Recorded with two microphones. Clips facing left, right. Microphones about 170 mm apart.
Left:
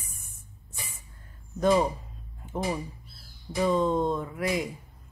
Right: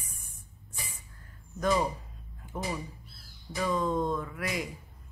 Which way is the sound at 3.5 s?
25° left (ahead or behind).